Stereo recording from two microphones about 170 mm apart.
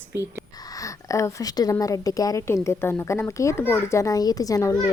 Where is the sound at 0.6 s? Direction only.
20° left (ahead or behind).